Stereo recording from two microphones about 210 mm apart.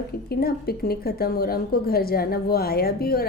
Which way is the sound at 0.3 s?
45° left (ahead or behind).